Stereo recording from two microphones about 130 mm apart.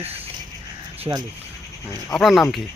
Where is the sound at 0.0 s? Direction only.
50° right (ahead or behind).